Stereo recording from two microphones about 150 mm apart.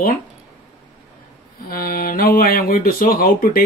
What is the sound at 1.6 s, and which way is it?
Speech, 75° left (ahead or behind).